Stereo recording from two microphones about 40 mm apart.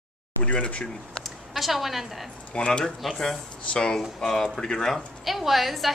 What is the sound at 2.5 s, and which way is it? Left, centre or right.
Speech, left.